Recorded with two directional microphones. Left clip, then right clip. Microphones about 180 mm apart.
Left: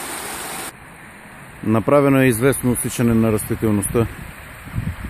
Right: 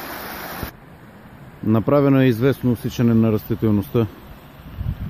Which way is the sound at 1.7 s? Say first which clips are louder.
Left 2 dB; 5° left (ahead or behind).